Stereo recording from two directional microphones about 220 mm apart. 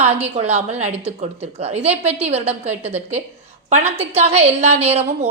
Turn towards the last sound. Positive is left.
turn(degrees=-30)  # may be behind; listen again after turning